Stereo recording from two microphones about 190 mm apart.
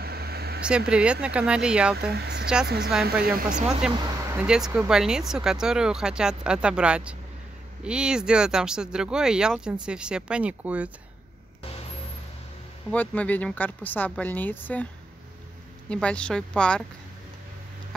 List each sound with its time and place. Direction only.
0.0 s a sound: 55° right (ahead or behind)
0.7 s speech: 5° right (ahead or behind)
2.0 s speech: 60° right (ahead or behind)
3.4 s speech: 5° right (ahead or behind)
12.9 s speech: 10° left (ahead or behind)
15.9 s speech: 5° left (ahead or behind)